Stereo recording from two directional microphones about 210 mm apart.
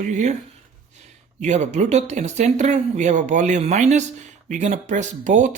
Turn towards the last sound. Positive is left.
turn(degrees=-35)  # may be behind; listen again after turning